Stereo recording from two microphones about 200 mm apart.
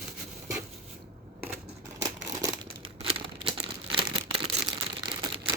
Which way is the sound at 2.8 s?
30° right (ahead or behind).